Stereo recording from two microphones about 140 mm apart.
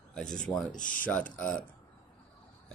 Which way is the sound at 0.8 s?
75° left (ahead or behind).